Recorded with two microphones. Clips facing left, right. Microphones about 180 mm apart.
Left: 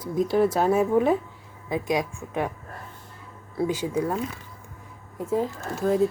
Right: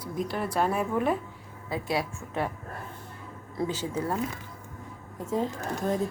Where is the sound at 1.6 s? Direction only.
15° left (ahead or behind).